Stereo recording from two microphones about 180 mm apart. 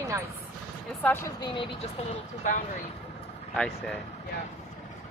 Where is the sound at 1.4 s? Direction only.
25° left (ahead or behind).